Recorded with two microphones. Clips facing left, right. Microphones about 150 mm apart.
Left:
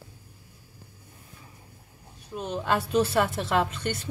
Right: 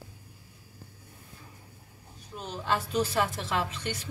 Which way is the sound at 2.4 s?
55° left (ahead or behind).